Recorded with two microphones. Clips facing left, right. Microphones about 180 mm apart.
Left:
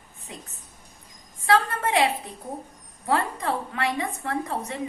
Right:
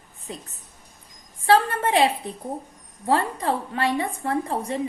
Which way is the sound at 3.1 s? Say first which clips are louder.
Right 3 dB; 30° right (ahead or behind).